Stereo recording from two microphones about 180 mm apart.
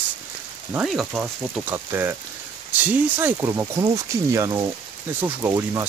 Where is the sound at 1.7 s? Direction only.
10° right (ahead or behind).